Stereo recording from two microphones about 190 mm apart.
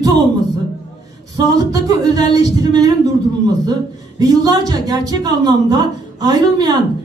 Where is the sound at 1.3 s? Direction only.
20° right (ahead or behind).